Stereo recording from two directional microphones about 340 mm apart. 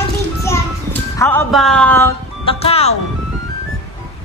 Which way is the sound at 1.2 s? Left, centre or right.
Centre.